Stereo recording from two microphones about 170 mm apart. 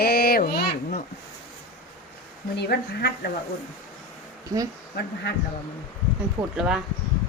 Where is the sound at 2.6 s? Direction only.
70° left (ahead or behind).